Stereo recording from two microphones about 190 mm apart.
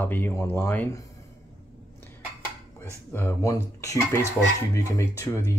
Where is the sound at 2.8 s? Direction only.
10° left (ahead or behind).